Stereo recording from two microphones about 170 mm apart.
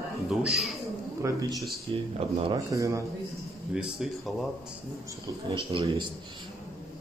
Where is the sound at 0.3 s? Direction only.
Centre (ahead or behind).